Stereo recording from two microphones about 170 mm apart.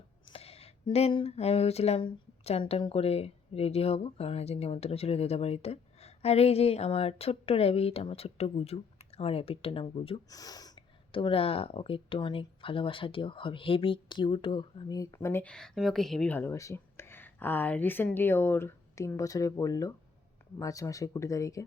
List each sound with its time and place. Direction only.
0.3 s speech: 35° left (ahead or behind)
10.2 s speech: 20° left (ahead or behind)